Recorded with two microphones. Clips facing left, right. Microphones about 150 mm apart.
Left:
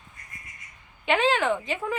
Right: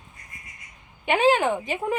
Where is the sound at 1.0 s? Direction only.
10° right (ahead or behind).